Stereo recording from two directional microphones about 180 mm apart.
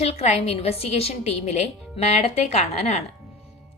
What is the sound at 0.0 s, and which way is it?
A woman's voice, 35° left (ahead or behind).